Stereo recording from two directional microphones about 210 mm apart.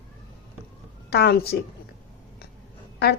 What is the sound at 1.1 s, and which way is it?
Speech, 50° left (ahead or behind).